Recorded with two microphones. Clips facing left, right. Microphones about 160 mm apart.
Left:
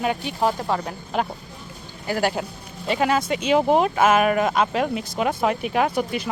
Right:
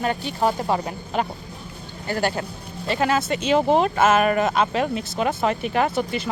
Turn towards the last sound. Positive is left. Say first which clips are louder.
# even
turn(degrees=10)  # may be behind; listen again after turning